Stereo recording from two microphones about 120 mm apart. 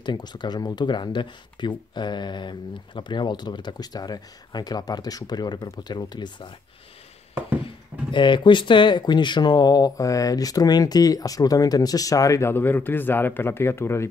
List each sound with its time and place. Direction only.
0.0 s speech: 35° left (ahead or behind)
7.6 s speech: 40° left (ahead or behind); by 14.0 s 20° left (ahead or behind)